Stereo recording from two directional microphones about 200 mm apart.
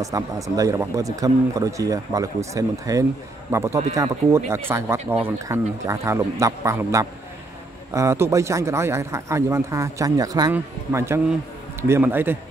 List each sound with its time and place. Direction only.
0.0 s speech: 15° right (ahead or behind)